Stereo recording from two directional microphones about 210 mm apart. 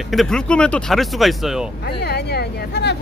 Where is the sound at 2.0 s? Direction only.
50° left (ahead or behind).